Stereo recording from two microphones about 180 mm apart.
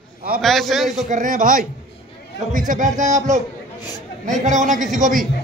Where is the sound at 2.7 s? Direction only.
45° right (ahead or behind).